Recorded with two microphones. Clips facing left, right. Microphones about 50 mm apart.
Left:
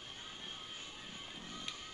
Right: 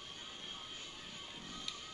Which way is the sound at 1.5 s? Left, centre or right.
Left.